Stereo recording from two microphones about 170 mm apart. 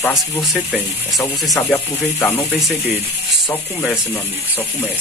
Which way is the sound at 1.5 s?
15° left (ahead or behind).